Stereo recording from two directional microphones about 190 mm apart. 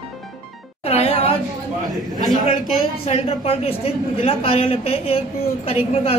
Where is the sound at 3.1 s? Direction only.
30° left (ahead or behind).